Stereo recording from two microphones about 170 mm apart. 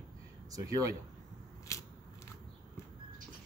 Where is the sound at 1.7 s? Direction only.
20° left (ahead or behind).